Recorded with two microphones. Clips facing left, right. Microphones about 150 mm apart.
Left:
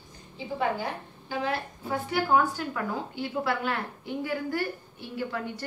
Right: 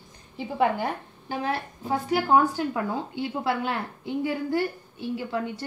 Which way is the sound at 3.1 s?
20° right (ahead or behind).